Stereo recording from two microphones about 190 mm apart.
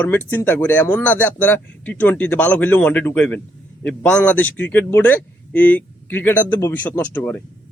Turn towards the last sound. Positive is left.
turn(degrees=10)  # may be behind; listen again after turning